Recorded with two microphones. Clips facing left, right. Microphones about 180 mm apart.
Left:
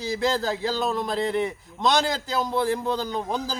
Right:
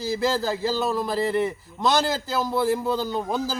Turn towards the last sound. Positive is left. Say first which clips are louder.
# right 2 dB
turn(degrees=-5)  # may be behind; listen again after turning